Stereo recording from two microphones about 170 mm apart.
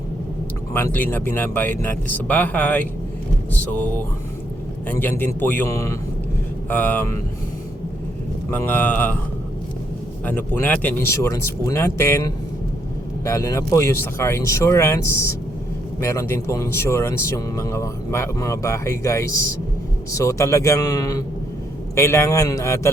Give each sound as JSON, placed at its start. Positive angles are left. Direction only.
{"t": 0.7, "sound": "speech", "side_deg": 10}
{"t": 8.4, "sound": "speech", "side_deg": 10}
{"t": 10.2, "sound": "speech", "side_deg": 10}